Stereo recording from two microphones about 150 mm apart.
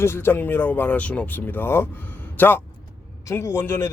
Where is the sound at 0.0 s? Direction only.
15° left (ahead or behind).